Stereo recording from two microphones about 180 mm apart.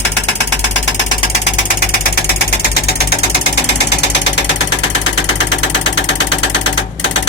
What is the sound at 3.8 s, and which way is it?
Ratchet, 75° left (ahead or behind).